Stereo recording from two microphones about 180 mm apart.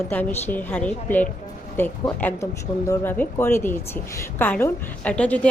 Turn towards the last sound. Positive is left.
turn(degrees=5)  # may be behind; listen again after turning